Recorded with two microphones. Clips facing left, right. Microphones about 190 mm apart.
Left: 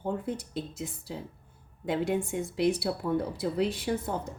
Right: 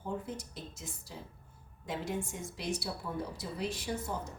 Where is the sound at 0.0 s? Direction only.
65° left (ahead or behind).